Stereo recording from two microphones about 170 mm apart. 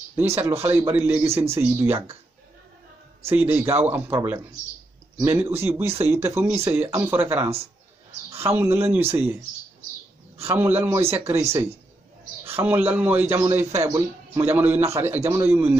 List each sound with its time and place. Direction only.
0.1 s a man's voice: 15° right (ahead or behind)
3.3 s a man's voice: 10° right (ahead or behind)
10.5 s a man's voice: 10° right (ahead or behind)